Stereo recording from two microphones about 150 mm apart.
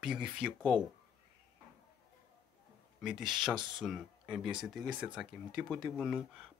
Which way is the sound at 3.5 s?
30° right (ahead or behind).